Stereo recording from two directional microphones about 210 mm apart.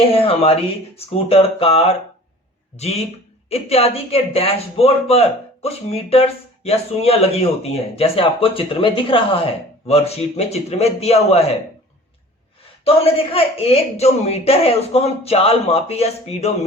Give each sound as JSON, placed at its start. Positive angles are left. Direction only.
{"t": 0.1, "sound": "speech", "side_deg": 25}
{"t": 12.8, "sound": "speech", "side_deg": 25}